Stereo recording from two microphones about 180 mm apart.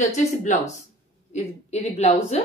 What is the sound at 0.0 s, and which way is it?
A woman's voice, 40° left (ahead or behind).